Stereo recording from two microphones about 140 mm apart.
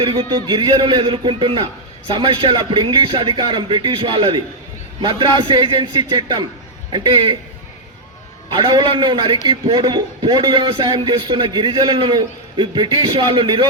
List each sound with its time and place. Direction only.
0.0 s a man's voice: 40° right (ahead or behind)
8.4 s a man's voice: 30° right (ahead or behind)